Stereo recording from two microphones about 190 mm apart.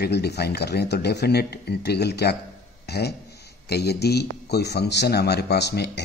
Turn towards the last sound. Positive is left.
turn(degrees=60)  # may be behind; listen again after turning